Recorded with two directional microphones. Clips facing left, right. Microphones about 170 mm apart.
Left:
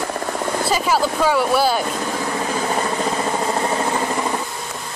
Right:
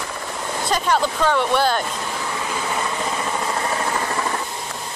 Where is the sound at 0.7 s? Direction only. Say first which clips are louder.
Even; 5° left (ahead or behind).